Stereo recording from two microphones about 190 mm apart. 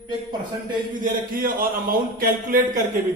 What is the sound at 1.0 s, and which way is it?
Speech, 45° right (ahead or behind).